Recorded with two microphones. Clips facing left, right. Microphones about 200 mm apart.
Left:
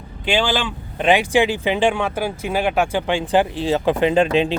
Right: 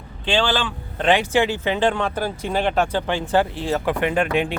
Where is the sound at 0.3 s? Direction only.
10° left (ahead or behind).